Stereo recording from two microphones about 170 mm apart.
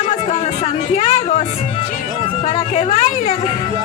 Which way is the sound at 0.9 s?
40° left (ahead or behind).